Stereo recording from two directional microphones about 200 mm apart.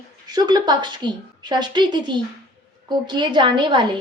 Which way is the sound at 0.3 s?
20° right (ahead or behind).